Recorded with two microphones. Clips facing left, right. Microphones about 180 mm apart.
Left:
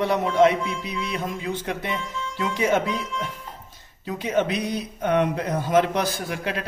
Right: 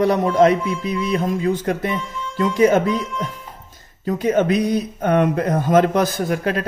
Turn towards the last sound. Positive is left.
turn(degrees=-45)  # may be behind; listen again after turning